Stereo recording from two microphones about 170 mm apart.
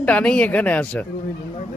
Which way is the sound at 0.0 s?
5° left (ahead or behind).